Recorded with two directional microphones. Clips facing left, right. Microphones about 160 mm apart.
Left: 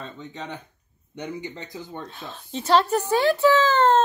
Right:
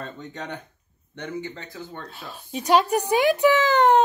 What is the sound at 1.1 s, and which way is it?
Speech, 15° left (ahead or behind).